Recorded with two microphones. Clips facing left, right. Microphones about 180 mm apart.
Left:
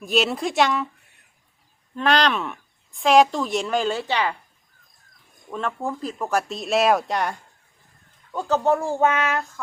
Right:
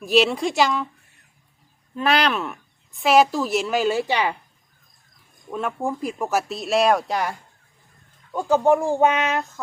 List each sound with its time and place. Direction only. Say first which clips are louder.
0.0 s a woman's voice: right 3 dB; centre (ahead or behind)
2.0 s a woman's voice: even; 5° right (ahead or behind)
5.5 s a woman's voice: right 2 dB; 10° right (ahead or behind)
8.3 s speech: right 3 dB; 10° right (ahead or behind)